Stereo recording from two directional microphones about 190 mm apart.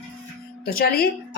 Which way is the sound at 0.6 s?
50° left (ahead or behind).